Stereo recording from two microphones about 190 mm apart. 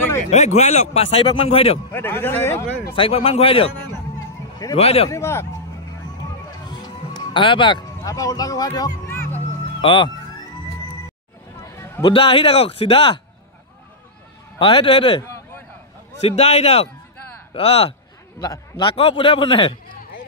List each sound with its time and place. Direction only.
0.3 s a man's voice: 35° left (ahead or behind)
1.9 s a man's voice: 10° left (ahead or behind)
2.9 s a man's voice: 30° left (ahead or behind)
4.7 s a man's voice: 30° left (ahead or behind)
5.1 s a man's voice: 15° left (ahead or behind)
6.7 s music: 25° left (ahead or behind)
9.8 s speech: 25° left (ahead or behind)
11.6 s a sound: 15° left (ahead or behind)
12.1 s a man's voice: 30° left (ahead or behind)
14.6 s a man's voice: 30° left (ahead or behind)